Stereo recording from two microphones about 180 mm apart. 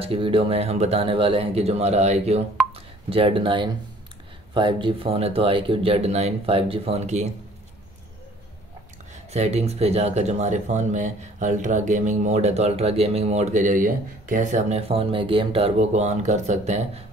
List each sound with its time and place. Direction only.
0.0 s speech: 30° right (ahead or behind)
9.1 s speech: 35° right (ahead or behind)